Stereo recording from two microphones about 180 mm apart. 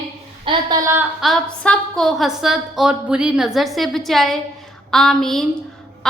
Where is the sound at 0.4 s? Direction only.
20° right (ahead or behind).